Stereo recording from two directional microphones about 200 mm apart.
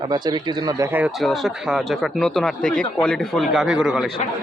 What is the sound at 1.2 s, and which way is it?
Speech, centre (ahead or behind).